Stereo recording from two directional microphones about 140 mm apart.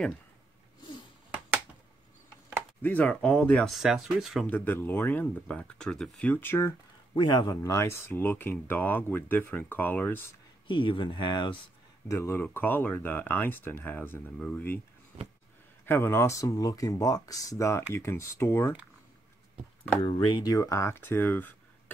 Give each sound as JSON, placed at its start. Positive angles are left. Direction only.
{"t": 2.8, "sound": "speech", "side_deg": 10}
{"t": 4.5, "sound": "speech", "side_deg": 15}
{"t": 7.2, "sound": "speech", "side_deg": 35}
{"t": 7.6, "sound": "speech", "side_deg": 20}
{"t": 10.7, "sound": "speech", "side_deg": 35}
{"t": 12.1, "sound": "speech", "side_deg": 20}
{"t": 15.8, "sound": "speech", "side_deg": 15}
{"t": 20.0, "sound": "speech", "side_deg": 35}